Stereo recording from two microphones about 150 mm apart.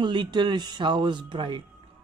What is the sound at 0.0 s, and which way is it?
Speech, 30° right (ahead or behind).